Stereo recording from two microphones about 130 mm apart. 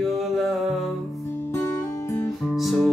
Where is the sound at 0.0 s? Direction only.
Centre (ahead or behind).